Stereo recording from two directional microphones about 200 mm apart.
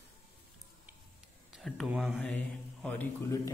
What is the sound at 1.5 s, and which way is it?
Speech, centre (ahead or behind).